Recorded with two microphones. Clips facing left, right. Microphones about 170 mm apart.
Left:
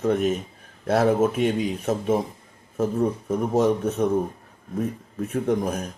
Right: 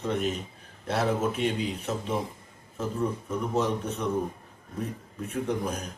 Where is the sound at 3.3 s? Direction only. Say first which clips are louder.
Left 8 dB; 45° left (ahead or behind).